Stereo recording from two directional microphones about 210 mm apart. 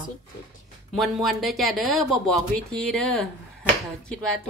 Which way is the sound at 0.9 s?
Centre (ahead or behind).